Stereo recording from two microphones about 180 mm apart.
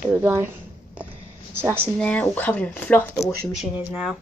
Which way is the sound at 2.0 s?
5° left (ahead or behind).